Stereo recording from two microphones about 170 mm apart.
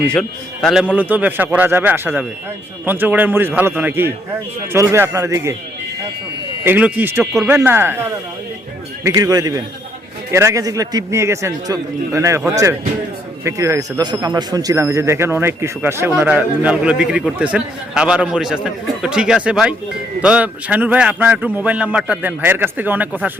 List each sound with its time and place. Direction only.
0.1 s a man's voice: 5° left (ahead or behind); by 5.5 s 20° right (ahead or behind)
6.7 s a man's voice: 10° right (ahead or behind)
9.0 s a man's voice: 20° right (ahead or behind)
13.4 s a man's voice: 20° right (ahead or behind)